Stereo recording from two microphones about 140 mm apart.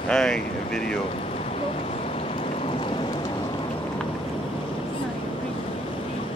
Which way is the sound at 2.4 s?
40° left (ahead or behind).